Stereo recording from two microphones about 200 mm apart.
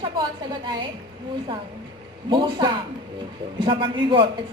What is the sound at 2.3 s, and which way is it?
A man's voice, 20° right (ahead or behind).